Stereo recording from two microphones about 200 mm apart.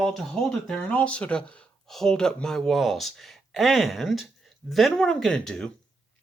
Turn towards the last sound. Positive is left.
turn(degrees=5)  # may be behind; listen again after turning